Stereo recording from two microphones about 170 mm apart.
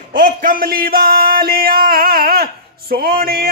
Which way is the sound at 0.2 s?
55° right (ahead or behind).